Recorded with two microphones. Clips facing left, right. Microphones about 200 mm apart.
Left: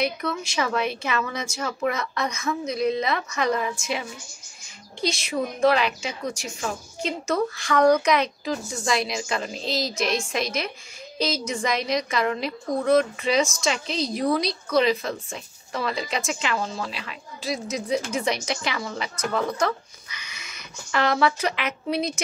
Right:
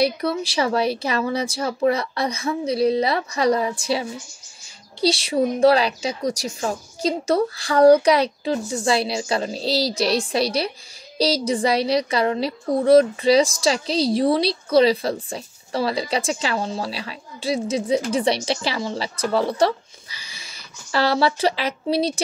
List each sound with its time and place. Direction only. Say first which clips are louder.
0.0 s a woman's voice: right 6 dB; 35° right (ahead or behind)